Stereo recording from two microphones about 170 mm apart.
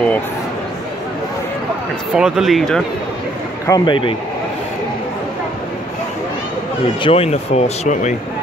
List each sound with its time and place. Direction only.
2.1 s speech: 5° right (ahead or behind)
3.6 s a man's voice: 25° left (ahead or behind)
7.0 s speech: 35° left (ahead or behind)